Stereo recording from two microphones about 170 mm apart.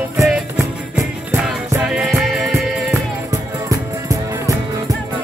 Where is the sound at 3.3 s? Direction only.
20° right (ahead or behind).